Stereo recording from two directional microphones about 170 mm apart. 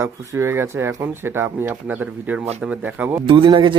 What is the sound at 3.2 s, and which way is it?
Speech, 30° right (ahead or behind).